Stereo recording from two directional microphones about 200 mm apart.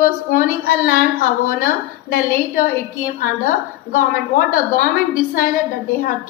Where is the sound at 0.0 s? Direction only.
45° left (ahead or behind).